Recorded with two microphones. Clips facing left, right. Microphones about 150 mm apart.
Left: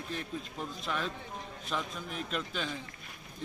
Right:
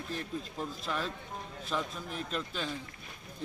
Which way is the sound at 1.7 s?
Centre (ahead or behind).